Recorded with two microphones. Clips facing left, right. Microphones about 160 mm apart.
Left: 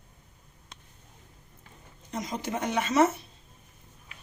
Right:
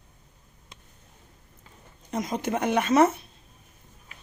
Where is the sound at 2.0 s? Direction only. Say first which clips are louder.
Right 5 dB; 55° right (ahead or behind).